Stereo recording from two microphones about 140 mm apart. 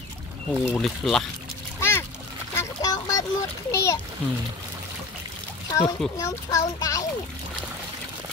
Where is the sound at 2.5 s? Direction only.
25° left (ahead or behind).